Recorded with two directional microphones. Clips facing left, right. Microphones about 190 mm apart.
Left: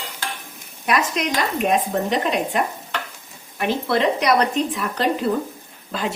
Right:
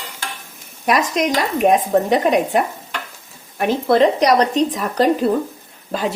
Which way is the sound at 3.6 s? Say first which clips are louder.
Right 6 dB; 45° right (ahead or behind).